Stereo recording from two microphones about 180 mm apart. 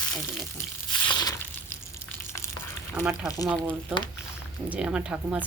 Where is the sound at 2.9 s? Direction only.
10° right (ahead or behind).